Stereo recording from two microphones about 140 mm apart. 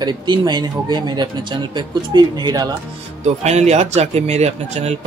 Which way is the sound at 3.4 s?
50° right (ahead or behind).